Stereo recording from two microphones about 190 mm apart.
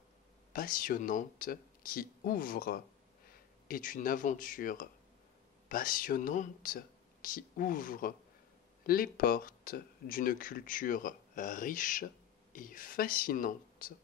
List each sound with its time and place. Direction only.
0.5 s speech: 50° left (ahead or behind)